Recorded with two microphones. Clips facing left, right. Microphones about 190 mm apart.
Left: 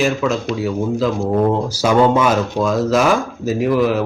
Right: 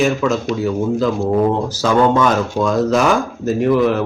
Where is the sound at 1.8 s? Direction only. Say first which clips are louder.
Even; 10° left (ahead or behind).